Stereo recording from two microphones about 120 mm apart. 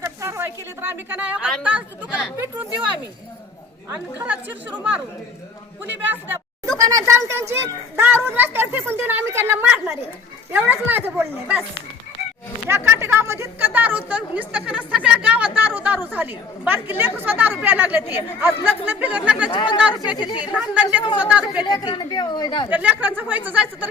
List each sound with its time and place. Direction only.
0.0 s a woman's voice: 20° right (ahead or behind)
2.3 s speech: 20° right (ahead or behind)
3.8 s a woman's voice: 20° right (ahead or behind)
6.7 s a woman's voice: 30° right (ahead or behind); by 11.5 s 15° right (ahead or behind)
12.6 s a woman's voice: 20° right (ahead or behind)
19.5 s a woman's voice: 40° left (ahead or behind)
20.4 s a woman's voice: 10° right (ahead or behind)
21.6 s a woman's voice: 35° left (ahead or behind)
22.7 s a woman's voice: 15° right (ahead or behind)